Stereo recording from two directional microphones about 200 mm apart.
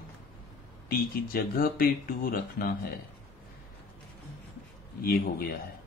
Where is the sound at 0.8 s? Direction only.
45° left (ahead or behind).